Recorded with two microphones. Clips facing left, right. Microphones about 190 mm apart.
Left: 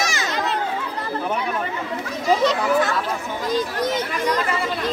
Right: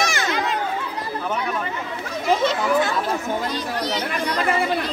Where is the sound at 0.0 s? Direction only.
55° right (ahead or behind).